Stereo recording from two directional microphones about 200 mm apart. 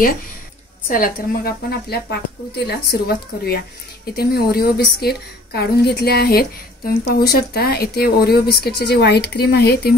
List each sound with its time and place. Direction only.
0.8 s speech: 45° left (ahead or behind)